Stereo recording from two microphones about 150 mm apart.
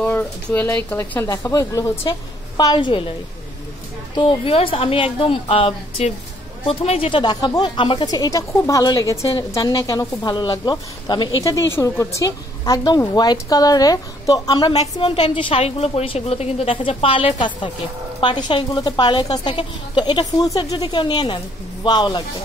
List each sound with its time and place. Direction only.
0.0 s speech: 10° left (ahead or behind); by 3.1 s 35° left (ahead or behind)
4.1 s a woman's voice: 35° left (ahead or behind)
15.0 s a woman's voice: 40° left (ahead or behind)